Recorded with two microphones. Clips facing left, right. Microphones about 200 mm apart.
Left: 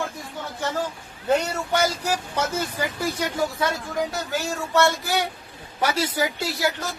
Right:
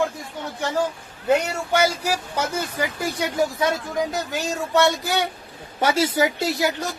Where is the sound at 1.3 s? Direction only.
10° right (ahead or behind).